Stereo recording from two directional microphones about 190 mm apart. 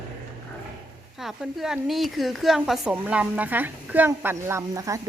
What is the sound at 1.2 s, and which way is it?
A woman's voice, centre (ahead or behind).